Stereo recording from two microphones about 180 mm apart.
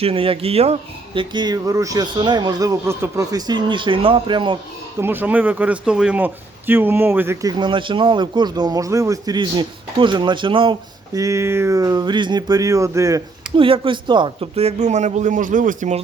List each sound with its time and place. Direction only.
0.0 s a man's voice: 30° right (ahead or behind)
4.9 s speech: 10° right (ahead or behind)
7.6 s a man's voice: 30° right (ahead or behind)
13.6 s a man's voice: 30° right (ahead or behind)